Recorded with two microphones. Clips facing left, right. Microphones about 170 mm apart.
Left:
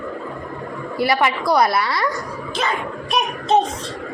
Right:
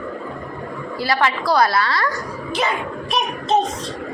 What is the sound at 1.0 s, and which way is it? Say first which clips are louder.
A woman's voice: left 1 dB; 20° left (ahead or behind).